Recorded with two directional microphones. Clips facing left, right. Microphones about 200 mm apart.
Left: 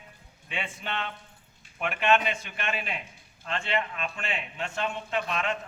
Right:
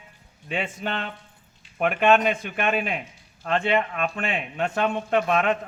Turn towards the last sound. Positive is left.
turn(degrees=-55)  # may be behind; listen again after turning